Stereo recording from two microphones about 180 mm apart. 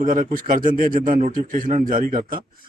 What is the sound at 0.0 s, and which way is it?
A man's voice, 50° right (ahead or behind).